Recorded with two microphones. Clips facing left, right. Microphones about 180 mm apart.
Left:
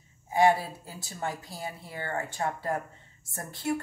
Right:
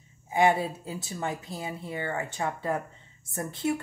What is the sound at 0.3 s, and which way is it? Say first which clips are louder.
Speech: even; 20° right (ahead or behind).